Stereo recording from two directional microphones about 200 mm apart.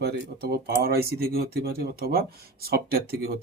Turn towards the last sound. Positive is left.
turn(degrees=-50)  # may be behind; listen again after turning